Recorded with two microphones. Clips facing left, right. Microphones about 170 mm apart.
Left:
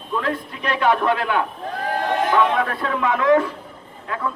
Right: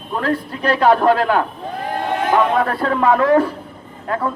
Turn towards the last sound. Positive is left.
turn(degrees=-45)  # may be behind; listen again after turning